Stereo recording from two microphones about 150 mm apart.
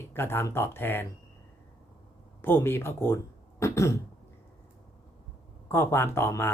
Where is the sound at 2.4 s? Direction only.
15° left (ahead or behind).